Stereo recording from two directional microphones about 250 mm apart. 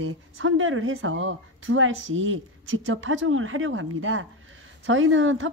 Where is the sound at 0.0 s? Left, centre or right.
Right.